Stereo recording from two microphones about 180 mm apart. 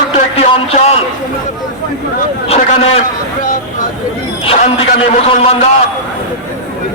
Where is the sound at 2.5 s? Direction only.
35° left (ahead or behind).